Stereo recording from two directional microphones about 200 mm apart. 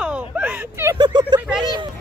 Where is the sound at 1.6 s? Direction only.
20° right (ahead or behind).